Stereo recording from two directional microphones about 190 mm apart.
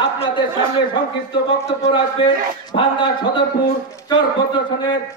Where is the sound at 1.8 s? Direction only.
25° left (ahead or behind).